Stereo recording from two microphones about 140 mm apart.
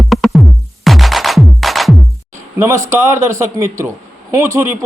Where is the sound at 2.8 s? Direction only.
20° right (ahead or behind).